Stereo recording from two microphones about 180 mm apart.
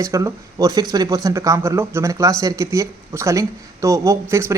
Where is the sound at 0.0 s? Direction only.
15° right (ahead or behind).